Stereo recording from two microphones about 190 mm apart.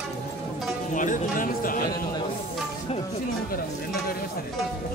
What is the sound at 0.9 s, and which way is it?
Speech, 45° left (ahead or behind).